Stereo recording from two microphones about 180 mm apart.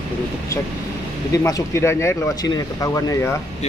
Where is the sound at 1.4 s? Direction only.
15° left (ahead or behind).